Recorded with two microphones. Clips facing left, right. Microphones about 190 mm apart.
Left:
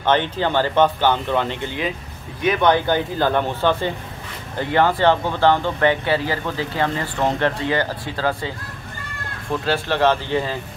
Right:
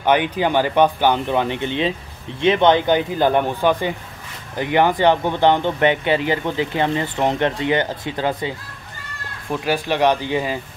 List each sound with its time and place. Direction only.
0.0 s speech: 10° right (ahead or behind)